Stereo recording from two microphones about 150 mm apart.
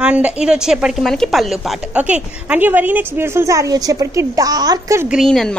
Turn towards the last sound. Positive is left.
turn(degrees=5)  # may be behind; listen again after turning